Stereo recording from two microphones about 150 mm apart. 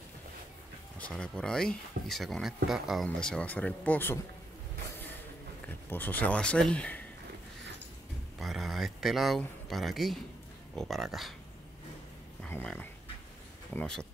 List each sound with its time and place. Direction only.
0.9 s speech: 10° left (ahead or behind)
5.7 s speech: 10° left (ahead or behind)
8.4 s speech: centre (ahead or behind)
12.4 s speech: 10° left (ahead or behind)